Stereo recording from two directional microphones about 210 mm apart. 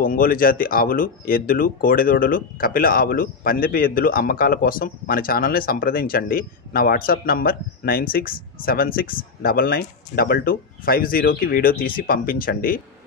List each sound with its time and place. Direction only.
0.0 s speech: 40° left (ahead or behind)